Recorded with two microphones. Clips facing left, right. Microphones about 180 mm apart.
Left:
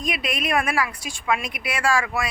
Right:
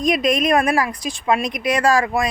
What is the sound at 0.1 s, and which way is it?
A woman's voice, 40° right (ahead or behind).